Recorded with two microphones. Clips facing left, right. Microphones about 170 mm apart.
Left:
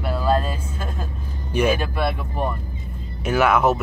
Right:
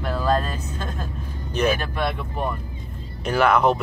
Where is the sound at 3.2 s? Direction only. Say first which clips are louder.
Even; 5° left (ahead or behind).